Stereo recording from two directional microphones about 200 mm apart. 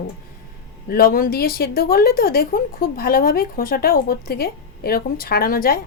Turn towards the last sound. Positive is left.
turn(degrees=45)  # may be behind; listen again after turning